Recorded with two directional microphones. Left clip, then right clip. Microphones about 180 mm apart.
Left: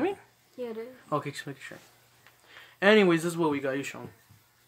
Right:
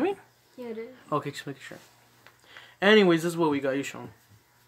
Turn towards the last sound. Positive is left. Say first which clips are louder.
# right 2 dB
turn(degrees=-15)  # may be behind; listen again after turning